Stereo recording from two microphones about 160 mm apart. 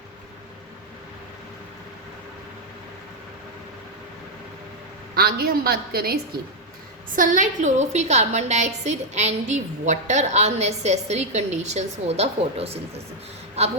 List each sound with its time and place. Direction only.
5.1 s a woman's voice: 70° right (ahead or behind)
7.2 s a woman's voice: 55° right (ahead or behind)